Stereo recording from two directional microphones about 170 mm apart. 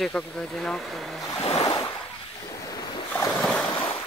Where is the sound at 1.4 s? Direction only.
30° left (ahead or behind).